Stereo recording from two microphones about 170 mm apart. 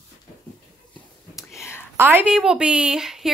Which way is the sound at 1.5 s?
15° left (ahead or behind).